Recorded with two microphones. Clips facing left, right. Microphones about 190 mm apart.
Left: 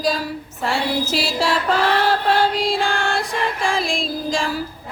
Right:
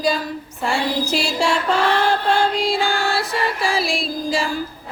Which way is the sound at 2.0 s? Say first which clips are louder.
Even; 5° left (ahead or behind).